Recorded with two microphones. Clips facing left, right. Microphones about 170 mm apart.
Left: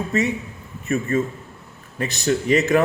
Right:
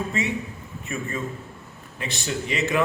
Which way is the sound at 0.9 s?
40° left (ahead or behind).